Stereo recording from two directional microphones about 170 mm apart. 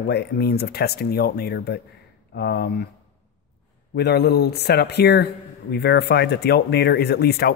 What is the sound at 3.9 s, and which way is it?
Speech, 75° left (ahead or behind).